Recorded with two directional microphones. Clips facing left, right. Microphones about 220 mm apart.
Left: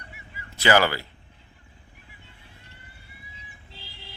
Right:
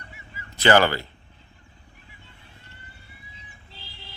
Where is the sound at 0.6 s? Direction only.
5° left (ahead or behind).